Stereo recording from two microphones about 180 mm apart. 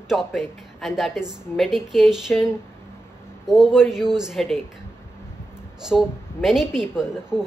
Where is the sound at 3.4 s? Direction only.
5° right (ahead or behind).